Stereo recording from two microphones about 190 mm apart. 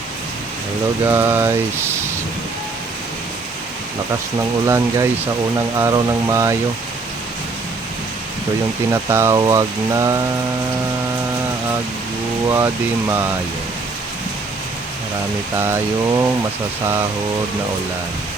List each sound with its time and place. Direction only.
1.0 s speech: 10° right (ahead or behind)
4.6 s speech: 15° right (ahead or behind)
8.9 s speech: 15° right (ahead or behind)
12.5 s speech: 15° right (ahead or behind)
15.5 s speech: 15° right (ahead or behind)